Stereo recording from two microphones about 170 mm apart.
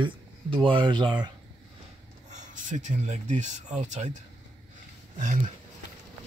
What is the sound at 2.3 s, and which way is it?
Speech, 50° right (ahead or behind).